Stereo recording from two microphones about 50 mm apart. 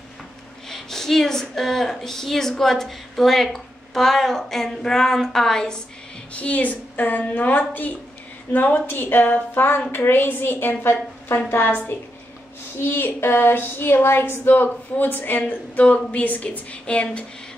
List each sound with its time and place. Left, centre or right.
0.7 s a woman's voice: centre
6.3 s a woman's voice: left
15.8 s a woman's voice: left